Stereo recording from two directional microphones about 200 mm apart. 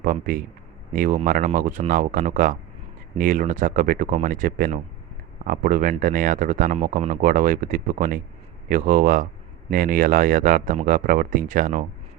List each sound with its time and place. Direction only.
0.0 s speech: 45° right (ahead or behind)